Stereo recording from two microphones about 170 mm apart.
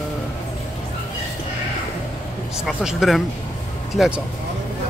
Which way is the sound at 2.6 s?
5° right (ahead or behind).